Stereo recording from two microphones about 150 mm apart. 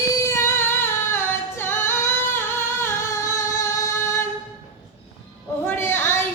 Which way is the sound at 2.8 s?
20° left (ahead or behind).